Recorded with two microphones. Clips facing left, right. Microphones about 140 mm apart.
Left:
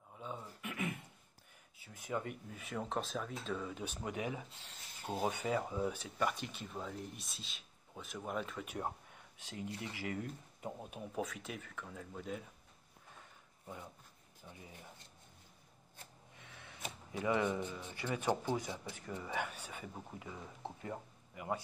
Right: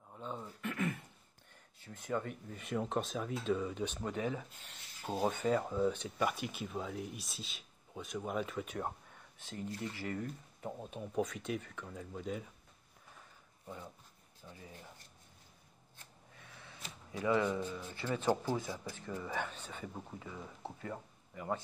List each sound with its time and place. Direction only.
0.2 s speech: 10° left (ahead or behind)
6.1 s speech: 10° right (ahead or behind)
14.4 s speech: 15° left (ahead or behind)
16.3 s speech: 20° left (ahead or behind)